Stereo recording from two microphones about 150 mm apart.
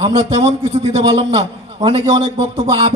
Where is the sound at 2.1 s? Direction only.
40° right (ahead or behind).